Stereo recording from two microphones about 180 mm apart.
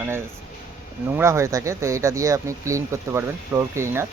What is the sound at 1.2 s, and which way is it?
Speech, 15° right (ahead or behind).